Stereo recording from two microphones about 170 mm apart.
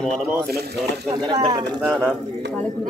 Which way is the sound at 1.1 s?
25° right (ahead or behind).